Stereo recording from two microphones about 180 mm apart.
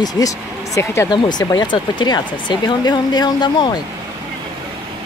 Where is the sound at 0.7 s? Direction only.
20° left (ahead or behind).